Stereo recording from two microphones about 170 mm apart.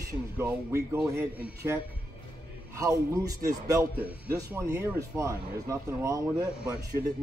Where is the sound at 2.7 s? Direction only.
20° right (ahead or behind).